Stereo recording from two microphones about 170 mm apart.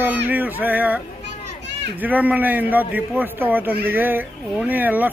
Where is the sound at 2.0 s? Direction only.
10° right (ahead or behind).